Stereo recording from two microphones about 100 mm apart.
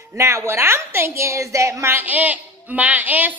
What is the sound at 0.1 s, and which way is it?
A woman's voice, 30° right (ahead or behind).